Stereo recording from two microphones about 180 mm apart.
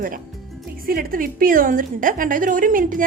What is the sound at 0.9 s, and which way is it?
A woman's voice, 55° right (ahead or behind).